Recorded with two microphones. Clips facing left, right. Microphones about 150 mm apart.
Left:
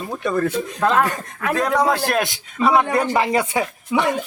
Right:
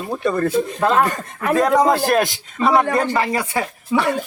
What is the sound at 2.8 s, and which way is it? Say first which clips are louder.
Speech: even; 15° left (ahead or behind).